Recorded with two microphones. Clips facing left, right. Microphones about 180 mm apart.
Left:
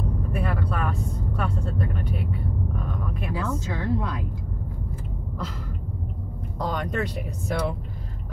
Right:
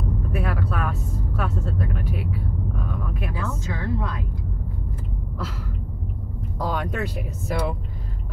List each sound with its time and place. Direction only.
0.3 s vehicle: 5° right (ahead or behind)
6.6 s speech: 5° right (ahead or behind)